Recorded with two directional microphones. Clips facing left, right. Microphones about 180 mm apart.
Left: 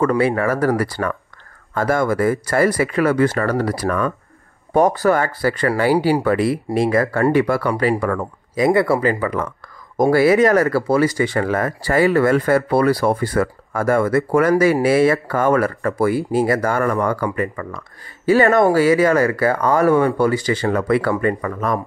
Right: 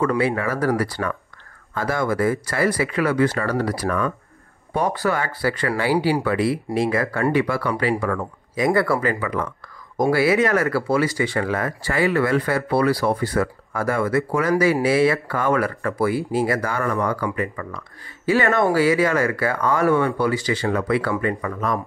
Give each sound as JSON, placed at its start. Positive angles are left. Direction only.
{"t": 0.0, "sound": "speech", "side_deg": 45}
{"t": 8.7, "sound": "speech", "side_deg": 30}